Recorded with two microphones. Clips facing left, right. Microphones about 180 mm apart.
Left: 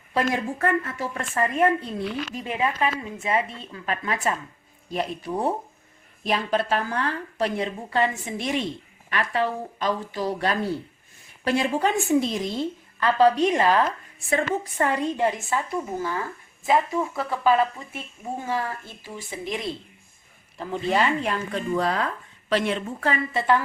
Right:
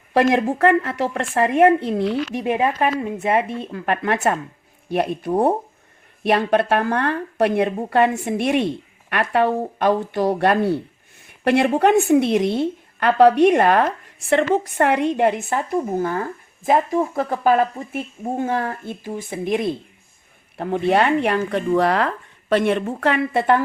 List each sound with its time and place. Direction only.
0.1 s speech: 80° right
2.3 s a woman's voice: 65° right (ahead or behind)